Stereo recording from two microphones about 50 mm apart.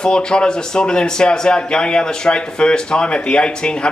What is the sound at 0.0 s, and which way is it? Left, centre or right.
Speech, centre.